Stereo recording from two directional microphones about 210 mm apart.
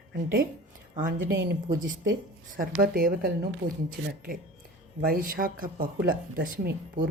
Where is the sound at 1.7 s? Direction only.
40° right (ahead or behind).